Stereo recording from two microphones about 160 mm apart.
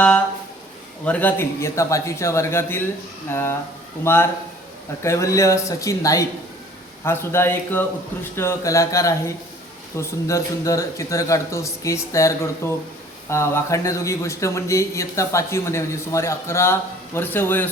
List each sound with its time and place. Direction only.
1.0 s speech: 10° left (ahead or behind)